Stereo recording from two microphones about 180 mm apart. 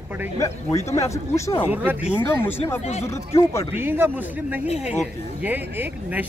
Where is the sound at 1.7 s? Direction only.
10° right (ahead or behind).